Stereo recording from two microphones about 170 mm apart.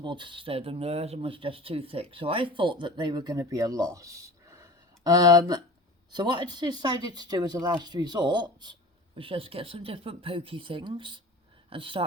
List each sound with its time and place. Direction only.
0.0 s speech: 30° right (ahead or behind)